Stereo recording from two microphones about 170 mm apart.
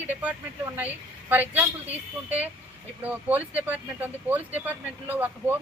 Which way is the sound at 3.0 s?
10° right (ahead or behind).